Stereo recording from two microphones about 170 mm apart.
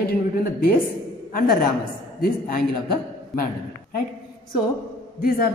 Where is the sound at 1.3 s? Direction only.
55° left (ahead or behind).